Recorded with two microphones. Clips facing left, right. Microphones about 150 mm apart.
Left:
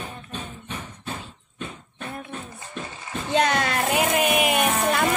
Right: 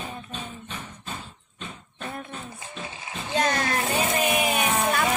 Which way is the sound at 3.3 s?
65° left (ahead or behind).